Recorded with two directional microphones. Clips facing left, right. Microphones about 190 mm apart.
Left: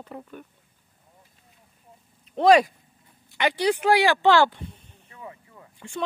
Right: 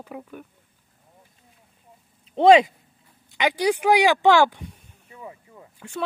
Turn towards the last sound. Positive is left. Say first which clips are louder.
# right 1 dB
turn(degrees=-5)  # may be behind; listen again after turning